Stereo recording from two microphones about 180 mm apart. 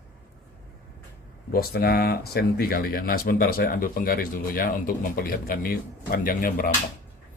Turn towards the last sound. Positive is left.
turn(degrees=50)  # may be behind; listen again after turning